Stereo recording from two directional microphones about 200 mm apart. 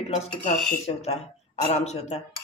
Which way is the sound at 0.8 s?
35° left (ahead or behind).